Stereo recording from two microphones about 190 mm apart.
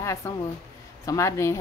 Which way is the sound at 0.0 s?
15° left (ahead or behind).